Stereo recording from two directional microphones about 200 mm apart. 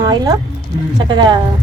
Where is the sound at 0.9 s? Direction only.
20° right (ahead or behind).